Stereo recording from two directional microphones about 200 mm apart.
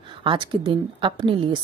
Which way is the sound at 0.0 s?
25° right (ahead or behind).